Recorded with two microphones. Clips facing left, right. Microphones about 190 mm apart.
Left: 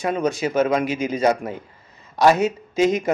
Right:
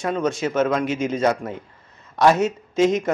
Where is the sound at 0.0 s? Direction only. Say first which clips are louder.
Left 1 dB; centre (ahead or behind).